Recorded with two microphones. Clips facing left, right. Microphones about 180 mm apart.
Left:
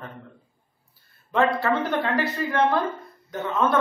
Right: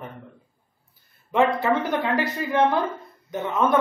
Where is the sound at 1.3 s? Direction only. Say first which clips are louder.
Right 1 dB; 15° right (ahead or behind).